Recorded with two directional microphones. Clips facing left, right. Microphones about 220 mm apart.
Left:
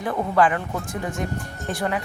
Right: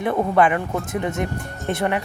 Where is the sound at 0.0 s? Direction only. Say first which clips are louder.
Right 3 dB; 25° right (ahead or behind).